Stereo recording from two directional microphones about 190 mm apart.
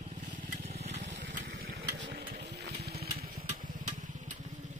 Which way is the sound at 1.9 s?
65° right (ahead or behind).